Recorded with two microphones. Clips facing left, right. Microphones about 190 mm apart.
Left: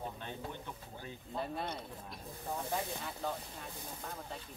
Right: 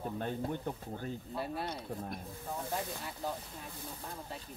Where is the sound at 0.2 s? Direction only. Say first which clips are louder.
Right 8 dB; 45° right (ahead or behind).